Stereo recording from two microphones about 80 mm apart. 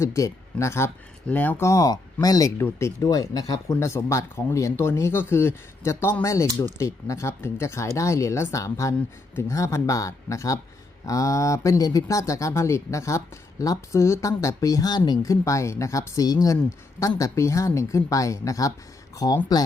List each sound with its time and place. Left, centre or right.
0.0 s speech: left
1.3 s speech: left
1.6 s speech: left
2.6 s speech: left
15.2 s speech: left